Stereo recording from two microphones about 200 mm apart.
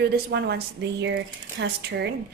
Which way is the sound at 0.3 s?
55° right (ahead or behind).